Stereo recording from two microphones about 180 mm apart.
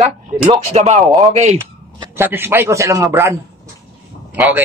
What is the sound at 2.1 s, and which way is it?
Speech, 10° right (ahead or behind).